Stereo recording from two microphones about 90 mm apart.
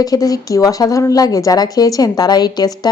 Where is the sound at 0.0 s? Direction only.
45° left (ahead or behind).